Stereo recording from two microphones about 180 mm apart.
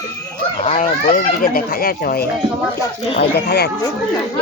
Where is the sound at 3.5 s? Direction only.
65° left (ahead or behind).